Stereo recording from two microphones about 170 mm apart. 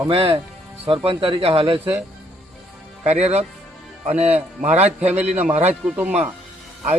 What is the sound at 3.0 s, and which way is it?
Speech, 40° right (ahead or behind).